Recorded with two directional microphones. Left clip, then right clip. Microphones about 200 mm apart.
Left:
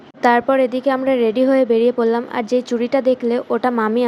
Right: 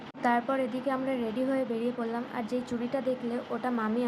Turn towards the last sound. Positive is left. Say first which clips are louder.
# left 14 dB
turn(degrees=45)  # may be behind; listen again after turning